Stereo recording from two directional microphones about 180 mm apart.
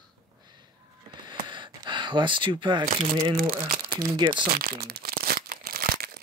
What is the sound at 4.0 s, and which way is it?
Speech, 25° right (ahead or behind).